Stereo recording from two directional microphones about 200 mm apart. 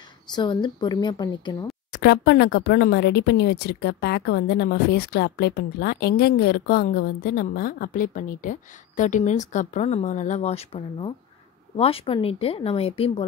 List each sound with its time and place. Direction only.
0.3 s speech: 20° left (ahead or behind)
1.9 s speech: 55° left (ahead or behind); by 13.1 s 30° left (ahead or behind)